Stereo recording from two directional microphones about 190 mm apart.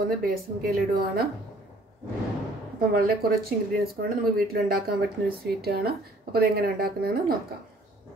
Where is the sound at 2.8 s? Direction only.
55° right (ahead or behind).